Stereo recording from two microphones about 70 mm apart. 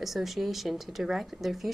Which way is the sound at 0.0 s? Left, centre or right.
Centre.